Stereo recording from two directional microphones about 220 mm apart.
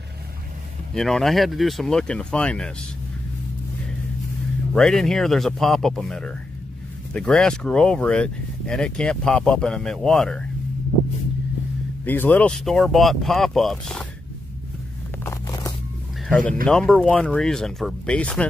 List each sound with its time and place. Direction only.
0.9 s speech: centre (ahead or behind)
4.7 s speech: centre (ahead or behind)
12.0 s speech: 10° left (ahead or behind)
15.2 s a sound: 15° left (ahead or behind)
16.3 s speech: 5° left (ahead or behind)